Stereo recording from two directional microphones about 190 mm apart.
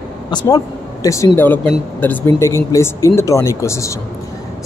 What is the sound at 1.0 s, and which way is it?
Speech, 15° left (ahead or behind).